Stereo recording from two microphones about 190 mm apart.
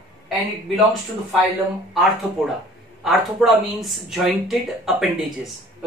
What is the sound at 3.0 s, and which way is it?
Speech, centre (ahead or behind).